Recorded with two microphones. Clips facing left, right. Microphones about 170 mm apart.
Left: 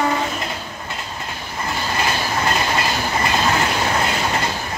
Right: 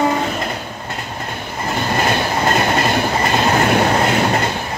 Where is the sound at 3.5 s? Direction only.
50° right (ahead or behind).